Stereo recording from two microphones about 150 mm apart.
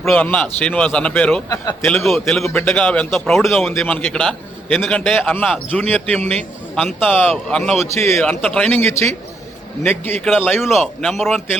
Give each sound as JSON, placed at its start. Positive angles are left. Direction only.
{"t": 0.0, "sound": "a man's voice", "side_deg": 5}
{"t": 1.5, "sound": "a man's voice", "side_deg": 25}
{"t": 1.9, "sound": "a man's voice", "side_deg": 0}
{"t": 2.5, "sound": "a man's voice", "side_deg": 10}
{"t": 8.8, "sound": "a man's voice", "side_deg": 20}
{"t": 10.4, "sound": "a man's voice", "side_deg": 15}
{"t": 10.8, "sound": "a man's voice", "side_deg": 0}